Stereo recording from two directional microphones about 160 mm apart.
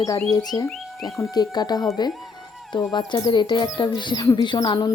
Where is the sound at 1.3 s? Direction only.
25° left (ahead or behind).